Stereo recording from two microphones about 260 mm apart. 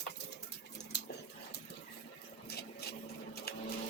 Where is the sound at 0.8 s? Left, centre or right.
Left.